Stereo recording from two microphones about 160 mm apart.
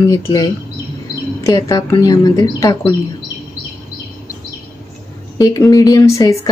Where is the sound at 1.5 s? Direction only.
20° left (ahead or behind).